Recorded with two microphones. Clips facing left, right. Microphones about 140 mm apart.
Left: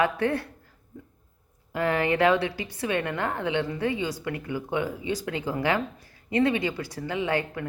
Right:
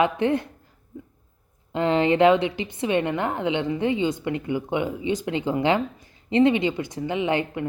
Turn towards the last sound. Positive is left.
turn(degrees=-20)  # may be behind; listen again after turning